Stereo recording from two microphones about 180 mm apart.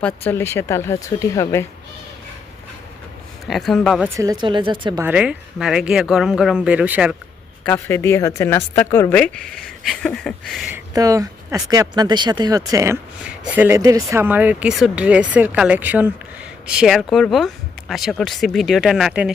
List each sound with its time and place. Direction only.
0.0 s speech: 10° left (ahead or behind)
3.4 s speech: centre (ahead or behind)
4.0 s speech: 20° right (ahead or behind)
4.9 s speech: 10° right (ahead or behind)
7.6 s speech: 10° left (ahead or behind)
10.7 s speech: 20° right (ahead or behind)